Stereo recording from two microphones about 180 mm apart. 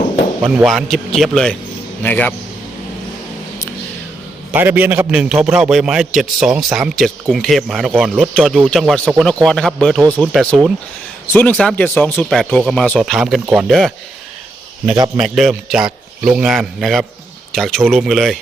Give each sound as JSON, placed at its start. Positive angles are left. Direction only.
{"t": 0.4, "sound": "a man's voice", "side_deg": -5}
{"t": 4.5, "sound": "a man's voice", "side_deg": -10}
{"t": 14.9, "sound": "a man's voice", "side_deg": -20}
{"t": 15.2, "sound": "a man's voice", "side_deg": 0}